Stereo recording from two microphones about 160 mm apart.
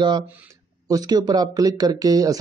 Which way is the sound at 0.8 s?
25° right (ahead or behind).